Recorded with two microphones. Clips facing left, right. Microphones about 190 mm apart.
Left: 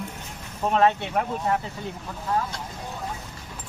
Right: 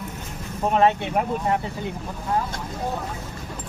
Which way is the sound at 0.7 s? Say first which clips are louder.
Right 1 dB; 10° right (ahead or behind).